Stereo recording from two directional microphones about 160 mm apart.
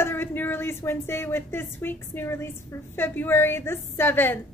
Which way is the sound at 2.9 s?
15° left (ahead or behind).